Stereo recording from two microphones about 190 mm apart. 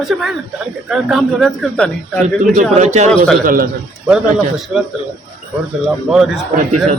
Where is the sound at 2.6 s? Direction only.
40° right (ahead or behind).